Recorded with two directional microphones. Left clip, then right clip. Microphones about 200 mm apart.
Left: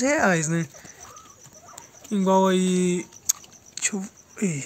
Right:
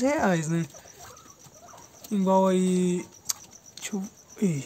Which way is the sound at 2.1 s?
15° left (ahead or behind).